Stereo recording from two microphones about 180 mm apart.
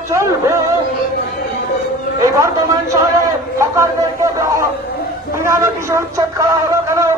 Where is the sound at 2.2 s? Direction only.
15° right (ahead or behind).